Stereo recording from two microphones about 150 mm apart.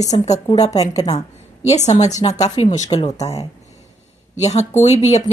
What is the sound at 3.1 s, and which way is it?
Speech, 25° left (ahead or behind).